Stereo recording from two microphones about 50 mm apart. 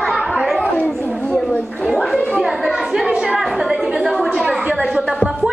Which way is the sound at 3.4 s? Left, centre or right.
Centre.